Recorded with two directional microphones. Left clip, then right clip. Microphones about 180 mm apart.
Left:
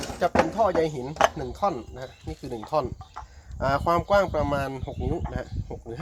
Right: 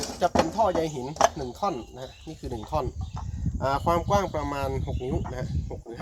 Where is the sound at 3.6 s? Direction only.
30° left (ahead or behind).